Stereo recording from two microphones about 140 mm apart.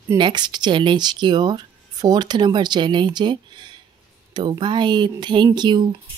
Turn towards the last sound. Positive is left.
turn(degrees=-30)  # may be behind; listen again after turning